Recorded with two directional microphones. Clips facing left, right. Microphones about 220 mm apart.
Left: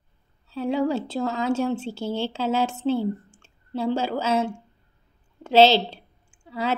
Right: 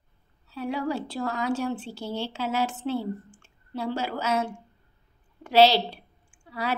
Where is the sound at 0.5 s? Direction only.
25° left (ahead or behind).